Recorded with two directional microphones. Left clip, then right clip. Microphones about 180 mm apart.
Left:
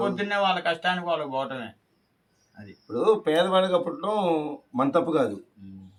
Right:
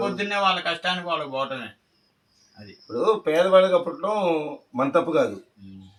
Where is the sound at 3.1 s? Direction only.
40° left (ahead or behind).